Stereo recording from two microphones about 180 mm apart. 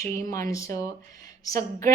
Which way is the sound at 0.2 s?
20° left (ahead or behind).